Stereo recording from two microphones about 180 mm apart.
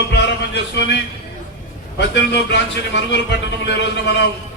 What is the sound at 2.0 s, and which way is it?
A man's voice, 70° left (ahead or behind).